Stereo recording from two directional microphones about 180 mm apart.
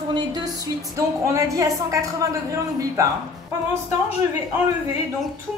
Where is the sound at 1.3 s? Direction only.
15° right (ahead or behind).